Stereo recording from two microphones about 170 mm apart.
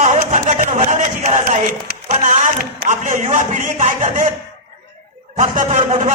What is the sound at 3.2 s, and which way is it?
Speech, 40° right (ahead or behind).